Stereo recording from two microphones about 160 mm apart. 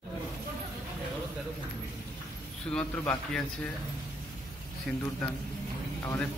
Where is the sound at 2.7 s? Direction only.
5° left (ahead or behind).